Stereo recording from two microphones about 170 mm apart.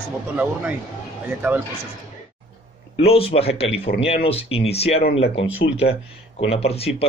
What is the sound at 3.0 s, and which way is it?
Speech, 35° left (ahead or behind).